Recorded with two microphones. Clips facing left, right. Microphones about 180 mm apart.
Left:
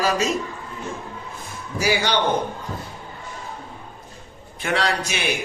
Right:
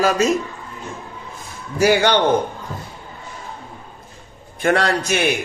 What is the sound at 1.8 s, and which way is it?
Speech, 60° right (ahead or behind).